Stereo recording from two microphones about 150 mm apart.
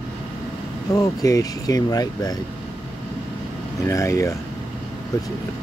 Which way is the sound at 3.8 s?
20° left (ahead or behind).